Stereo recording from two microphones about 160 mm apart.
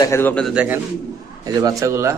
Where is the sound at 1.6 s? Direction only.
20° right (ahead or behind).